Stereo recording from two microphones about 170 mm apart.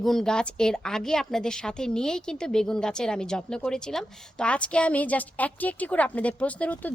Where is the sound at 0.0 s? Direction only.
Centre (ahead or behind).